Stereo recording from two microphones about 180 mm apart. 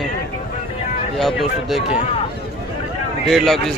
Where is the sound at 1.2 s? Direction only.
Centre (ahead or behind).